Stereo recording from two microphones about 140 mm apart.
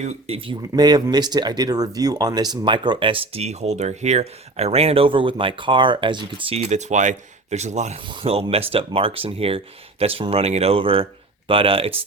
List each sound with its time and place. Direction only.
0.0 s speech: 50° right (ahead or behind)
6.7 s speech: 55° right (ahead or behind)
8.0 s speech: 40° right (ahead or behind)